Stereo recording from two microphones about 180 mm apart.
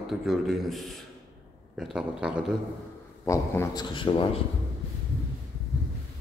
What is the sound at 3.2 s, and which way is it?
Speech, 15° left (ahead or behind).